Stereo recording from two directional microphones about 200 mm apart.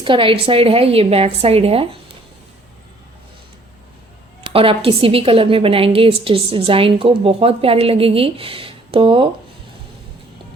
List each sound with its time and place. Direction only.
0.0 s a woman's voice: 25° right (ahead or behind)
4.4 s a woman's voice: 25° right (ahead or behind)